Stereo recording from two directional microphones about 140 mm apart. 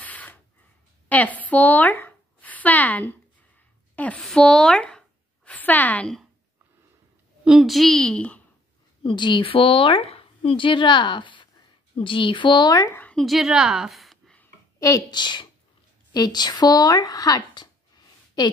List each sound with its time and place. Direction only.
0.0 s sneeze: 10° left (ahead or behind)
1.0 s a sound: 10° left (ahead or behind)
3.9 s speech: 10° left (ahead or behind)
7.4 s a woman's voice: centre (ahead or behind)
9.0 s speech: 35° left (ahead or behind)
13.0 s a woman's voice: 5° left (ahead or behind)
14.8 s speech: 25° left (ahead or behind)